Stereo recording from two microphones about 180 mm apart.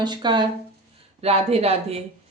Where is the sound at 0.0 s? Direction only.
25° right (ahead or behind).